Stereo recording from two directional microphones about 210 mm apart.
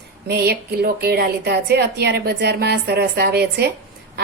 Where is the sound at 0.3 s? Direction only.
50° right (ahead or behind).